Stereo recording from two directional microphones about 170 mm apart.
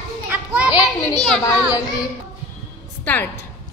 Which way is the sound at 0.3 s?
5° right (ahead or behind).